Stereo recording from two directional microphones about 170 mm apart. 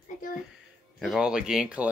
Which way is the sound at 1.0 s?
5° right (ahead or behind).